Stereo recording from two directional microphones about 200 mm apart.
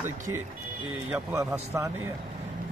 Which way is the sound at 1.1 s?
10° right (ahead or behind).